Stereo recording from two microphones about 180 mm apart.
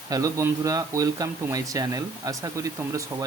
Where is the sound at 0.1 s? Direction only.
15° right (ahead or behind).